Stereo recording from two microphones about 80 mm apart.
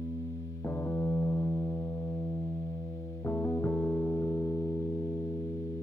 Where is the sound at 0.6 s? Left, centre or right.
Left.